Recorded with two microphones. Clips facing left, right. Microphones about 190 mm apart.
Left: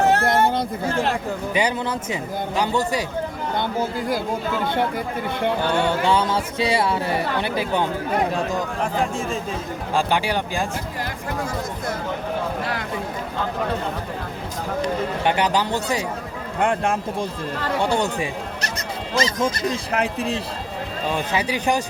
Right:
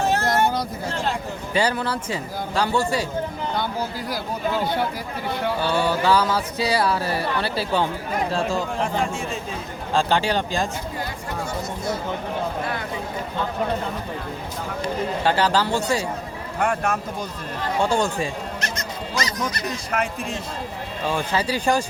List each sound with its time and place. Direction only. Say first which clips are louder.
0.0 s a sound: left 4 dB; 60° left (ahead or behind)
0.9 s speech: left 3 dB; 60° left (ahead or behind)
1.5 s speech: right 2 dB; 20° left (ahead or behind)
5.5 s speech: left 1 dB; 20° left (ahead or behind)
9.9 s speech: right 1 dB; 15° left (ahead or behind)
15.2 s speech: right 1 dB; 20° left (ahead or behind)
16.6 s speech: left 2 dB; 30° left (ahead or behind)
17.8 s speech: right 1 dB; 15° left (ahead or behind)
21.1 s speech: even; 15° left (ahead or behind)